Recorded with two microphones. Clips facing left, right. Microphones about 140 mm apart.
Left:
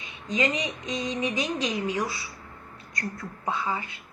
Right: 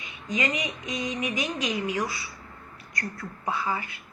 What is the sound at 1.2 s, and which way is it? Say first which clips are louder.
Speech: left 3 dB; 25° left (ahead or behind).